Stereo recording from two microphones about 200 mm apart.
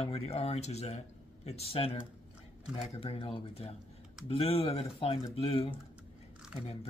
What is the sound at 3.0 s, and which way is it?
Speech, 30° left (ahead or behind).